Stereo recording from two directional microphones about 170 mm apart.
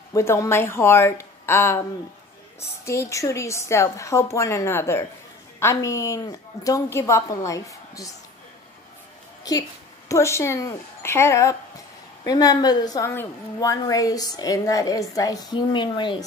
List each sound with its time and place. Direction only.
0.1 s a woman's voice: 15° left (ahead or behind)
2.8 s a woman's voice: 15° left (ahead or behind)
9.4 s a woman's voice: 20° left (ahead or behind)